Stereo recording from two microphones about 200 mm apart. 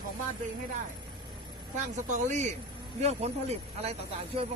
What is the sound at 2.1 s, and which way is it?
A woman's voice, 40° right (ahead or behind).